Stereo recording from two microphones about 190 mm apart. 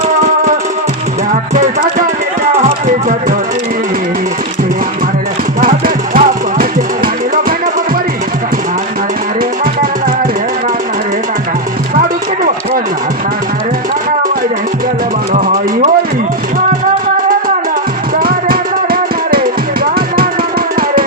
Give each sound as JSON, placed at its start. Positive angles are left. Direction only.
{"t": 5.5, "sound": "music", "side_deg": -50}
{"t": 18.2, "sound": "music", "side_deg": -50}